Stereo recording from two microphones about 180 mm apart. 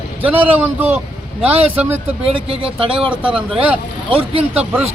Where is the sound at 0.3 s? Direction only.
10° right (ahead or behind).